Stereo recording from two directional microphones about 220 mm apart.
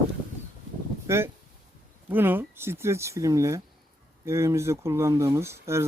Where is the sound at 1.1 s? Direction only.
10° right (ahead or behind).